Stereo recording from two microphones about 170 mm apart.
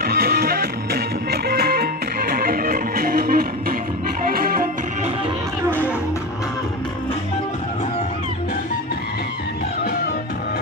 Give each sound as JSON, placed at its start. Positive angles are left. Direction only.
{"t": 0.0, "sound": "music", "side_deg": -70}